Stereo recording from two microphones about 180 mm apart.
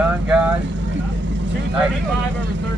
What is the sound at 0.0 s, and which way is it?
Vehicle, 5° right (ahead or behind).